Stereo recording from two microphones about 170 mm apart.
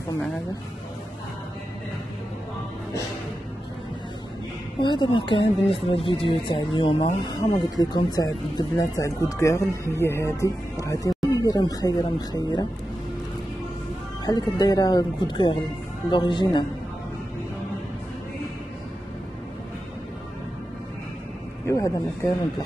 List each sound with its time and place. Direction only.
4.7 s speech: 25° left (ahead or behind)
14.2 s speech: 20° left (ahead or behind)
21.6 s speech: 15° left (ahead or behind)